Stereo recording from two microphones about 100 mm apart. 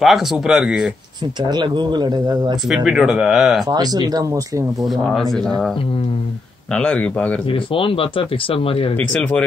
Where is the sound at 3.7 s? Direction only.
40° right (ahead or behind).